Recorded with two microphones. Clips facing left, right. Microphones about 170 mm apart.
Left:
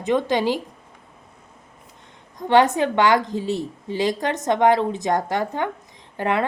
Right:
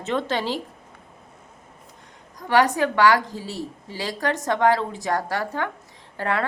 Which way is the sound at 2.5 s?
20° left (ahead or behind).